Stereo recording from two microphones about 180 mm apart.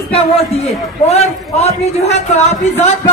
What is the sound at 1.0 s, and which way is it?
A man's voice, 35° left (ahead or behind).